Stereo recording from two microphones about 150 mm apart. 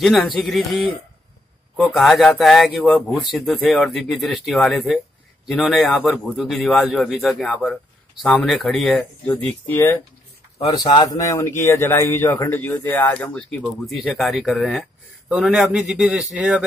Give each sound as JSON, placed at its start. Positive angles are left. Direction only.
{"t": 0.0, "sound": "speech", "side_deg": 0}
{"t": 2.0, "sound": "a man's voice", "side_deg": 0}
{"t": 10.7, "sound": "speech", "side_deg": 30}